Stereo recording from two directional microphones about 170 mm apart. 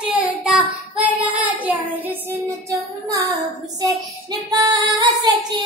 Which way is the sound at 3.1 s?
20° right (ahead or behind).